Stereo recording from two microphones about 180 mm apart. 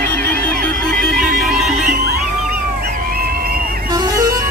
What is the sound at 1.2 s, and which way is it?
Music, centre (ahead or behind).